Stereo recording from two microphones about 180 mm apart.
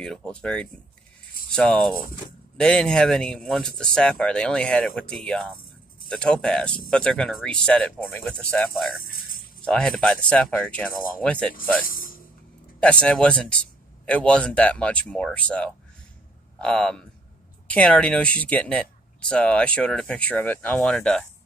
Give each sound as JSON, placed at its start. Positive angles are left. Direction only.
{"t": 0.0, "sound": "speech", "side_deg": 5}
{"t": 11.8, "sound": "speech", "side_deg": 50}
{"t": 12.8, "sound": "speech", "side_deg": 5}